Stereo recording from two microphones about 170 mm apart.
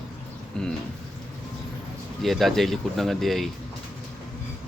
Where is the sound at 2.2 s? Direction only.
Centre (ahead or behind).